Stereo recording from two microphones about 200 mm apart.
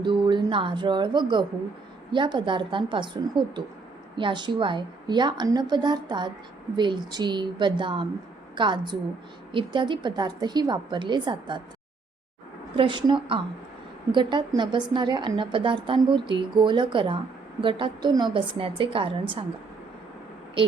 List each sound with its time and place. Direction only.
0.0 s a woman's voice: 25° right (ahead or behind)
12.7 s a woman's voice: 25° right (ahead or behind)